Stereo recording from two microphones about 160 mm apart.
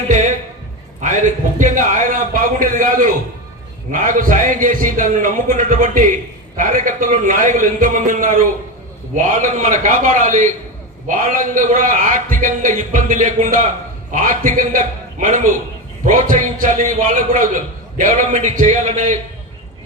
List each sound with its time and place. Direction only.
0.1 s a sound: 50° right (ahead or behind)
1.0 s a man's voice: 50° right (ahead or behind)
16.0 s a man's voice: 55° right (ahead or behind)